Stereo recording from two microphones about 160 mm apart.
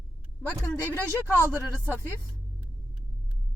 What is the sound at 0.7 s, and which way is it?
Speech, 15° left (ahead or behind).